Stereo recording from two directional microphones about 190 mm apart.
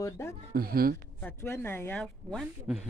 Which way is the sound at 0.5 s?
50° right (ahead or behind).